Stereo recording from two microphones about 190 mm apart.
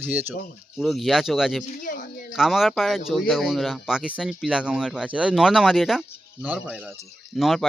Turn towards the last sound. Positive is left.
turn(degrees=0)  # may be behind; listen again after turning